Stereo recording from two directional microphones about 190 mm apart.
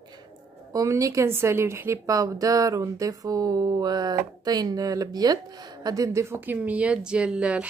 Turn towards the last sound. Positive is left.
turn(degrees=-5)  # may be behind; listen again after turning